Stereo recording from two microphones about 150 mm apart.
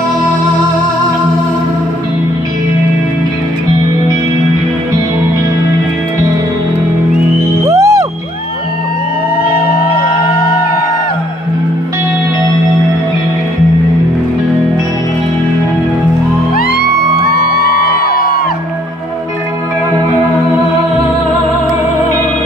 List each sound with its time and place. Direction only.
7.6 s music: 20° right (ahead or behind)
17.3 s music: 90° left